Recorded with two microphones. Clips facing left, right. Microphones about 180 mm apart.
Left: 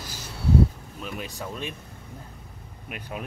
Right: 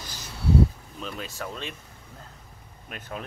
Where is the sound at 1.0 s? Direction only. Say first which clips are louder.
Even; 15° left (ahead or behind).